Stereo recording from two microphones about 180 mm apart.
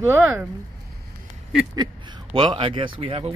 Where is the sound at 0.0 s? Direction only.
15° right (ahead or behind).